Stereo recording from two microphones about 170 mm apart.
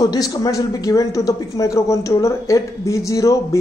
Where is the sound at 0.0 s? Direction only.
20° left (ahead or behind).